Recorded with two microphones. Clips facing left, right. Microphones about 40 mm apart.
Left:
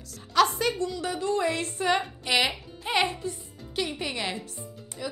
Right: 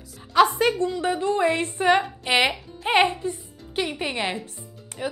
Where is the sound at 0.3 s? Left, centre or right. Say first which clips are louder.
Right 4 dB; centre.